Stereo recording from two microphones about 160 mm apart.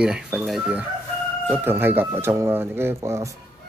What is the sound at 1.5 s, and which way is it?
Speech, 15° right (ahead or behind).